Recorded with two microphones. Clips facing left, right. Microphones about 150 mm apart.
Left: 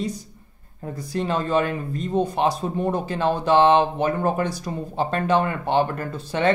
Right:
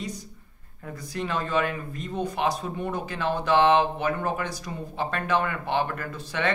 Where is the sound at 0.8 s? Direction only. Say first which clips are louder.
Left 6 dB; 30° left (ahead or behind).